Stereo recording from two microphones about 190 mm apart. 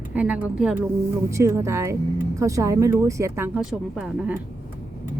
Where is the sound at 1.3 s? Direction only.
15° right (ahead or behind).